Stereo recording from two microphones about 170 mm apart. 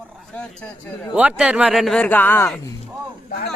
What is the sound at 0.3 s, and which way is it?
Speech, 5° left (ahead or behind).